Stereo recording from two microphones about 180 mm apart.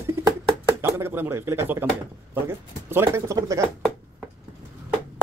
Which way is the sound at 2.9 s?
15° right (ahead or behind).